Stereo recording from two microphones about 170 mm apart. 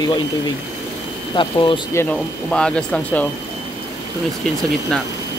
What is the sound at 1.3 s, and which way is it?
Speech, 30° left (ahead or behind).